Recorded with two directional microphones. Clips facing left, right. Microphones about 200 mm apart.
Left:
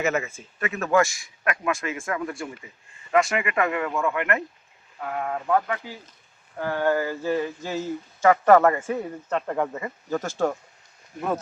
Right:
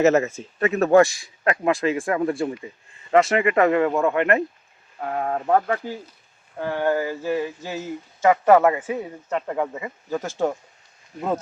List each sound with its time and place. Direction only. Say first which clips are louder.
0.0 s speech: right 8 dB; 40° right (ahead or behind)
6.6 s speech: right 1 dB; 20° right (ahead or behind)